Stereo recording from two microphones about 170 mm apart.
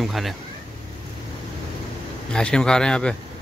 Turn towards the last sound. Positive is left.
turn(degrees=5)  # may be behind; listen again after turning